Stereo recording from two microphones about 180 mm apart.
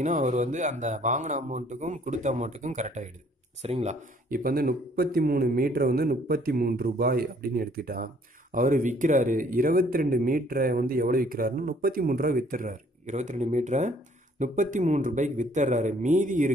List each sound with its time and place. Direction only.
0.0 s speech: 45° right (ahead or behind)